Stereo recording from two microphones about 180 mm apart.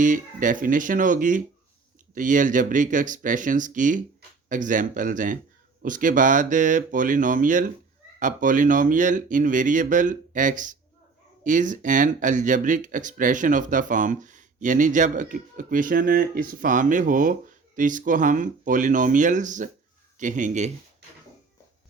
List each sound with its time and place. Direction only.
0.0 s speech: 45° right (ahead or behind)